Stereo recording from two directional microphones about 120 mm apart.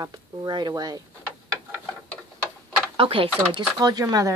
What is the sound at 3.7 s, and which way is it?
Speech, 35° right (ahead or behind).